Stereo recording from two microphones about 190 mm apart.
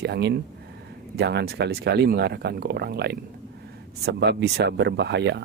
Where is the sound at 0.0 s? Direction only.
60° right (ahead or behind).